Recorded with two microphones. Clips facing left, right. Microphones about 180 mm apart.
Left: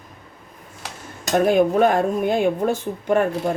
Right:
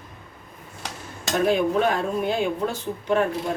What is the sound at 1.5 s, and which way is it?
Speech, 50° left (ahead or behind).